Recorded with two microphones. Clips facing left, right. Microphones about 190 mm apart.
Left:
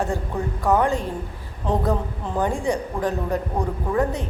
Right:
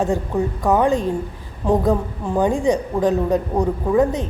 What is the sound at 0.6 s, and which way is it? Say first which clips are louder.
A woman's voice: right 2 dB; 15° right (ahead or behind).